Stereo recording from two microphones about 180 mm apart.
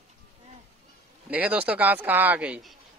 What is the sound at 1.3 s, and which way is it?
A man's voice, 10° right (ahead or behind).